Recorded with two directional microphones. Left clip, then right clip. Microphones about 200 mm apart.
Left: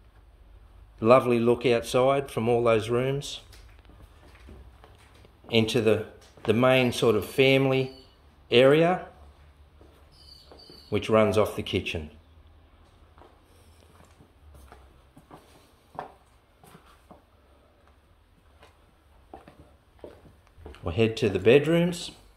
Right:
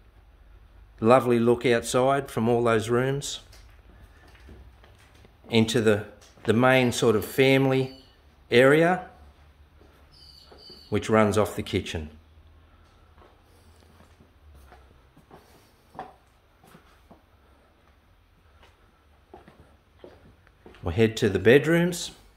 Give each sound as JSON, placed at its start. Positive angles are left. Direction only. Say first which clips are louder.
{"t": 0.9, "sound": "speech", "louder": "even", "side_deg": -20}
{"t": 5.5, "sound": "speech", "louder": "right 1 dB", "side_deg": -20}
{"t": 10.9, "sound": "speech", "louder": "even", "side_deg": -20}
{"t": 20.8, "sound": "speech", "louder": "right 2 dB", "side_deg": -25}